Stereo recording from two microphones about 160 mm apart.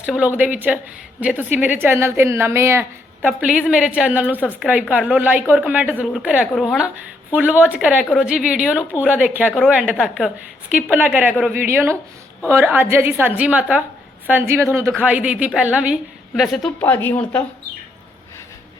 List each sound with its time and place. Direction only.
0.0 s a woman's voice: 10° right (ahead or behind)
16.8 s speech: 10° left (ahead or behind)